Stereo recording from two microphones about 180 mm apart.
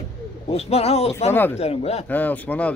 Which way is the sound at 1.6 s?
35° left (ahead or behind).